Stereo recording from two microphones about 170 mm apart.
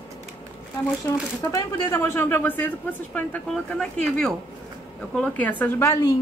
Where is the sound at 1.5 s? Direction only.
15° left (ahead or behind).